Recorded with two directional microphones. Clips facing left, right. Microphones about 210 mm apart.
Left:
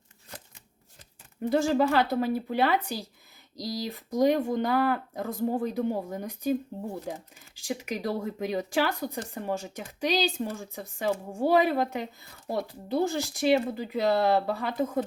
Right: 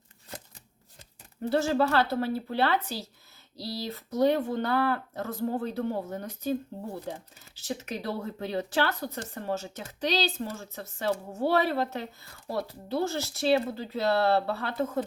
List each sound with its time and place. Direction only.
1.5 s speech: 15° left (ahead or behind)